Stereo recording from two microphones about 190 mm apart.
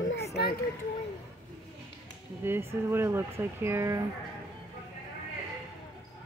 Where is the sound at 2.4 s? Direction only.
10° right (ahead or behind).